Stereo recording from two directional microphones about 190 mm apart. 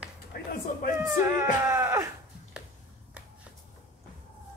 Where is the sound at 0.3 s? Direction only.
50° left (ahead or behind).